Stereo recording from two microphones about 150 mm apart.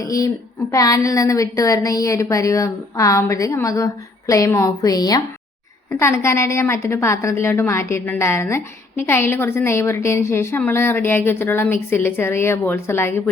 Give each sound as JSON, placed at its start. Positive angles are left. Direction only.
{"t": 0.0, "sound": "a woman's voice", "side_deg": 25}